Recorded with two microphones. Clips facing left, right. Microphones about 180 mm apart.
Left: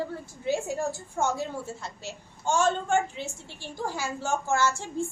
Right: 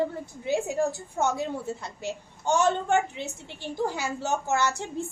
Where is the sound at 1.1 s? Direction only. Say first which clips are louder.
Right 1 dB; 60° right (ahead or behind).